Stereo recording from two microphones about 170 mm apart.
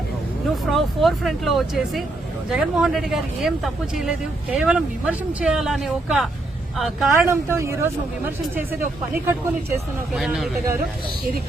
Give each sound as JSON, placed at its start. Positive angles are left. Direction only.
{"t": 0.5, "sound": "speech", "side_deg": 0}
{"t": 7.3, "sound": "speech", "side_deg": -15}
{"t": 9.2, "sound": "speech", "side_deg": -15}
{"t": 10.2, "sound": "speech", "side_deg": 0}